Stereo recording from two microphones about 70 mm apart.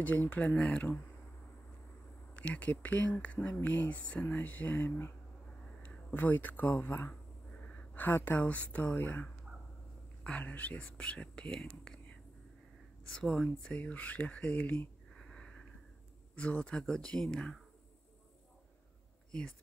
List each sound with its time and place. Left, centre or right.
0.0 s speech: left
2.3 s speech: left
6.1 s speech: left
13.1 s speech: centre
15.2 s sniff: centre
16.3 s speech: centre